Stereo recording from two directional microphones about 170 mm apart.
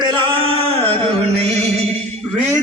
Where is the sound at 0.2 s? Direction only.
30° right (ahead or behind).